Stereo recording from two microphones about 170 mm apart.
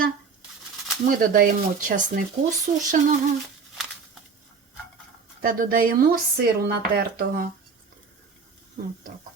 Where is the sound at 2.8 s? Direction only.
50° right (ahead or behind).